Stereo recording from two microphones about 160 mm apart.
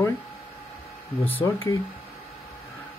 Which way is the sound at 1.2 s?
10° left (ahead or behind).